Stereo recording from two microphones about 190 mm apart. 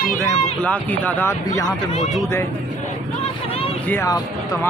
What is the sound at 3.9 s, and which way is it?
Speech, 15° left (ahead or behind).